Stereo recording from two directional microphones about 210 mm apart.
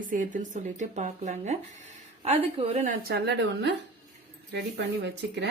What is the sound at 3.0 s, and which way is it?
Speech, 50° right (ahead or behind).